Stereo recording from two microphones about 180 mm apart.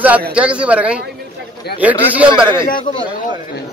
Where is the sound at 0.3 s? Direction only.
5° right (ahead or behind).